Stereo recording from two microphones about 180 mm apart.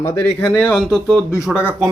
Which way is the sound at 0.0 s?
15° left (ahead or behind).